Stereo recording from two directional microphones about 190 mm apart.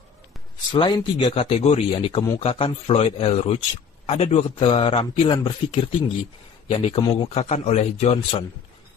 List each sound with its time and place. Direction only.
0.7 s a man's voice: 20° left (ahead or behind)